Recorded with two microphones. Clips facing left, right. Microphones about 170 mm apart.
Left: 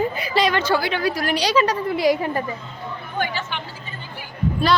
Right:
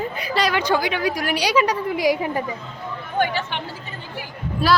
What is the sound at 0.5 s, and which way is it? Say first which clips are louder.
A woman's voice: even; 15° right (ahead or behind).